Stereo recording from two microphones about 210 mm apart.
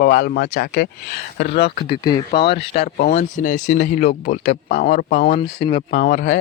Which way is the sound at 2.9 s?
40° left (ahead or behind).